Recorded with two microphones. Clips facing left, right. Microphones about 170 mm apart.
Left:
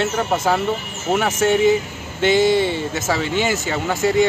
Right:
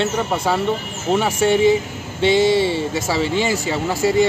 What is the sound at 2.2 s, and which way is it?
Speech, 30° right (ahead or behind).